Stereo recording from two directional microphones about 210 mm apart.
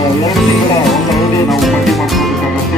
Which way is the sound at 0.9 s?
Centre (ahead or behind).